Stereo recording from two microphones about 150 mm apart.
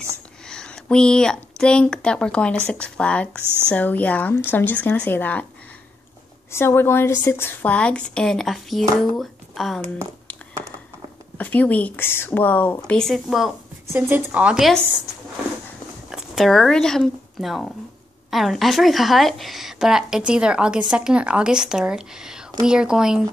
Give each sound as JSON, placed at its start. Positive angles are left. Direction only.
{"t": 0.5, "sound": "a woman's voice", "side_deg": 5}
{"t": 3.4, "sound": "speech", "side_deg": -15}
{"t": 3.7, "sound": "a woman's voice", "side_deg": 10}
{"t": 6.5, "sound": "a woman's voice", "side_deg": 15}
{"t": 11.3, "sound": "a woman's voice", "side_deg": 10}
{"t": 13.9, "sound": "speech", "side_deg": -10}
{"t": 16.1, "sound": "a woman's voice", "side_deg": -5}